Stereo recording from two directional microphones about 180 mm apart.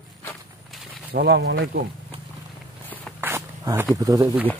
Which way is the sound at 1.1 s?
65° right (ahead or behind).